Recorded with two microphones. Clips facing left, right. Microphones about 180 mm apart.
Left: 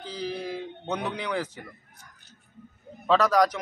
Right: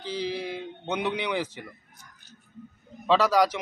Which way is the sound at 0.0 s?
80° right.